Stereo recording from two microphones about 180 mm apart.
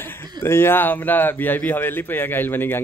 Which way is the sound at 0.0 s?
10° left (ahead or behind).